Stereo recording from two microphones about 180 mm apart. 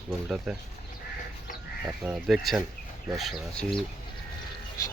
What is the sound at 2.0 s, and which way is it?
Speech, 5° right (ahead or behind).